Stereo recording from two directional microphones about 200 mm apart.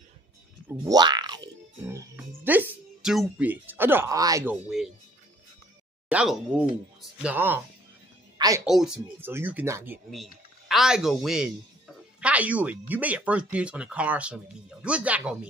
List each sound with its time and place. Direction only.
0.7 s a sound: 20° right (ahead or behind)
1.8 s speech: 10° right (ahead or behind)
4.6 s a man's voice: centre (ahead or behind)
6.0 s a man's voice: 5° right (ahead or behind)
8.6 s speech: centre (ahead or behind)
10.1 s a man's voice: centre (ahead or behind)